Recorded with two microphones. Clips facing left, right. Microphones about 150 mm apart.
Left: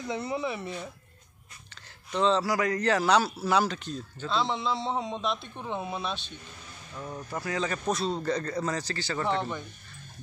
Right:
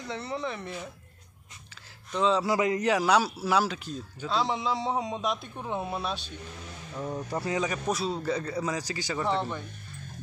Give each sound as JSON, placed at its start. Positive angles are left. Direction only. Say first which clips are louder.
{"t": 0.0, "sound": "speech", "louder": "left 2 dB", "side_deg": 10}
{"t": 2.1, "sound": "speech", "louder": "even", "side_deg": -5}
{"t": 2.4, "sound": "a man's voice", "louder": "right 2 dB", "side_deg": -20}
{"t": 2.9, "sound": "a man's voice", "louder": "left 2 dB", "side_deg": -10}
{"t": 7.6, "sound": "speech", "louder": "even", "side_deg": -10}
{"t": 9.2, "sound": "speech", "louder": "even", "side_deg": 0}